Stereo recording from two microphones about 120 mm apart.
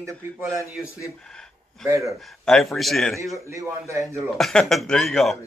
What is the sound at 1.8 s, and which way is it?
Speech, 20° right (ahead or behind).